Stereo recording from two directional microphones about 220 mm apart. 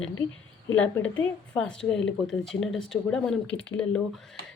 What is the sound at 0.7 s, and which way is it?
A woman's voice, 5° left (ahead or behind).